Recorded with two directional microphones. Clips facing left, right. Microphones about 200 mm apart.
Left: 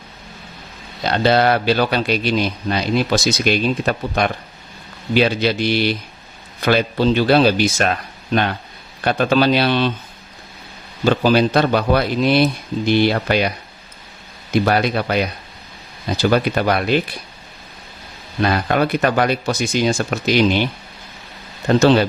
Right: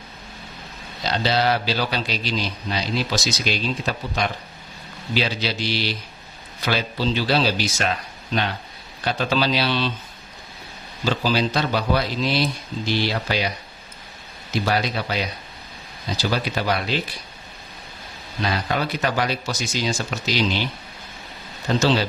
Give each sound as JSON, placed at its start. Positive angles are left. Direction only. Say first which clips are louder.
{"t": 1.0, "sound": "a man's voice", "louder": "left 6 dB", "side_deg": 55}
{"t": 11.0, "sound": "a man's voice", "louder": "left 7 dB", "side_deg": 55}
{"t": 14.5, "sound": "a man's voice", "louder": "left 6 dB", "side_deg": 55}
{"t": 18.4, "sound": "a man's voice", "louder": "left 7 dB", "side_deg": 55}
{"t": 21.7, "sound": "a man's voice", "louder": "left 7 dB", "side_deg": 55}